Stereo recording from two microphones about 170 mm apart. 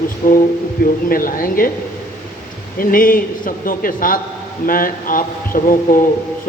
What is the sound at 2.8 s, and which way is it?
A man's voice, 55° left (ahead or behind).